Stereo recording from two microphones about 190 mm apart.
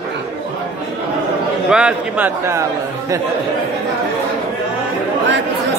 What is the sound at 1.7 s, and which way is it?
Speech, 5° right (ahead or behind).